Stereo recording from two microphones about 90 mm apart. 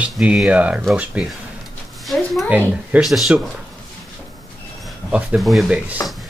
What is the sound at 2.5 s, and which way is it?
Speech, 15° right (ahead or behind).